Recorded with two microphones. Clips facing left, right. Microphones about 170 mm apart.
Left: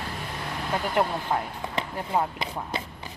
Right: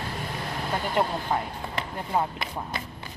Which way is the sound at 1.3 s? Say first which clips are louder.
Right 1 dB; centre (ahead or behind).